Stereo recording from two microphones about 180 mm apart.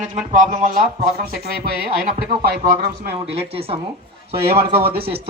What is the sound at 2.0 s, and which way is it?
Speech, 55° right (ahead or behind).